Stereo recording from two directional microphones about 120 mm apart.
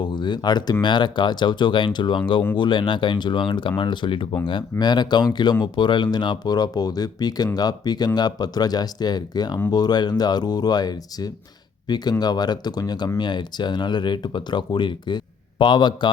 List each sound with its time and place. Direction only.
0.0 s speech: 40° left (ahead or behind)